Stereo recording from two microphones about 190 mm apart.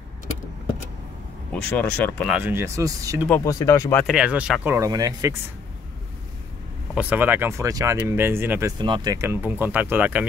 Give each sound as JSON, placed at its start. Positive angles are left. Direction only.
{"t": 1.5, "sound": "speech", "side_deg": 10}
{"t": 2.3, "sound": "speech", "side_deg": -10}
{"t": 3.3, "sound": "speech", "side_deg": 15}
{"t": 4.0, "sound": "speech", "side_deg": -5}
{"t": 4.7, "sound": "speech", "side_deg": -20}
{"t": 7.0, "sound": "speech", "side_deg": -10}